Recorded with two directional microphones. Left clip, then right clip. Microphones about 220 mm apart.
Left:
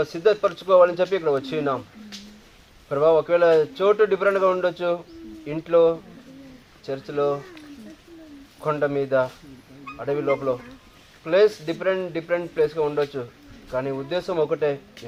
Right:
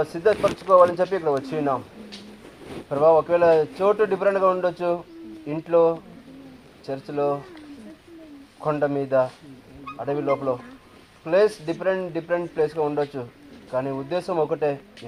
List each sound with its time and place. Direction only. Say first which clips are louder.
0.0 s speech: even; 10° left (ahead or behind)
2.9 s speech: right 1 dB; 10° left (ahead or behind)
8.6 s speech: even; 10° left (ahead or behind)
10.2 s speech: even; 20° left (ahead or behind)
11.3 s speech: left 1 dB; 10° left (ahead or behind)